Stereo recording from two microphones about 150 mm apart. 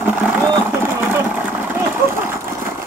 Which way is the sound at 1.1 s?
15° right (ahead or behind).